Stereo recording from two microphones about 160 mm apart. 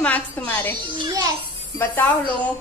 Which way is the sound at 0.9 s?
25° right (ahead or behind).